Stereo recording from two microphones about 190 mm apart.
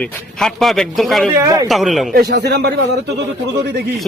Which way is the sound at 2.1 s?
60° right (ahead or behind).